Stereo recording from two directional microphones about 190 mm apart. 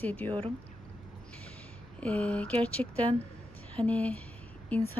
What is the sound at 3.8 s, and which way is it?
Speech, 5° left (ahead or behind).